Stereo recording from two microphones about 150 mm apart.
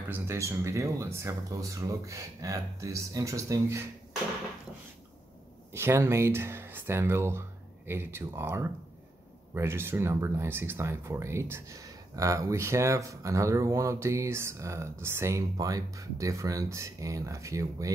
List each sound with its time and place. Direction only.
0.1 s speech: 20° right (ahead or behind)
5.7 s speech: 15° right (ahead or behind)